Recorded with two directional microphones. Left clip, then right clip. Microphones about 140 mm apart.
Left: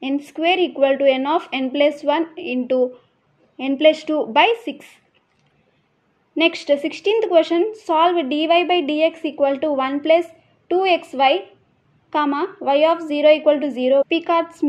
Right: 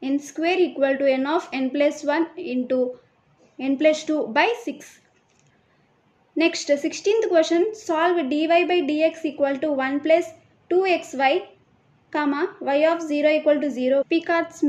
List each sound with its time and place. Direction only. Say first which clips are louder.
0.4 s a woman's voice: left 4 dB; 15° left (ahead or behind)
3.7 s speech: left 4 dB; 40° right (ahead or behind)
4.1 s a woman's voice: left 5 dB; 15° left (ahead or behind)
4.5 s speech: left 5 dB; 40° right (ahead or behind)
6.3 s a woman's voice: left 3 dB; 20° left (ahead or behind)